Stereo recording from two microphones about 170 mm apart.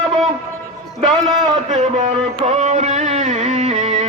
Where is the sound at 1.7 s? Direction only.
50° right (ahead or behind).